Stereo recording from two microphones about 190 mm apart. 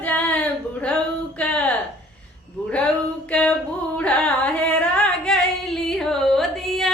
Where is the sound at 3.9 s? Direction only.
5° left (ahead or behind).